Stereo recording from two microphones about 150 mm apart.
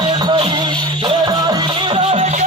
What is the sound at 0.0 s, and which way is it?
Music, 30° right (ahead or behind).